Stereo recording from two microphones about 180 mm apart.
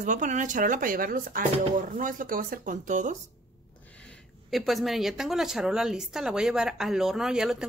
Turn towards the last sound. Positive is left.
turn(degrees=-5)  # may be behind; listen again after turning